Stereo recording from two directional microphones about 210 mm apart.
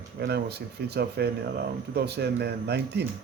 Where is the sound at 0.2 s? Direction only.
50° right (ahead or behind).